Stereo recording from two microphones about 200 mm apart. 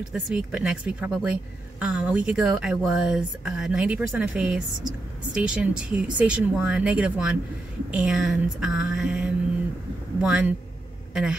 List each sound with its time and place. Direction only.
0.1 s a woman's voice: 5° right (ahead or behind)